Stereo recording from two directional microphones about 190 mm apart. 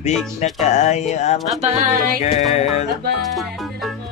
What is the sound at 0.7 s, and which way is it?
Speech, 35° left (ahead or behind).